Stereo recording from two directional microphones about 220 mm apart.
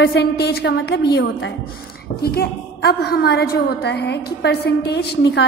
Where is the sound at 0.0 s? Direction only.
50° left (ahead or behind).